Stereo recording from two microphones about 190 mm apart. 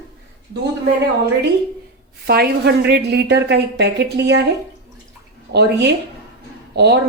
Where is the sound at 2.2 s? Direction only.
55° right (ahead or behind).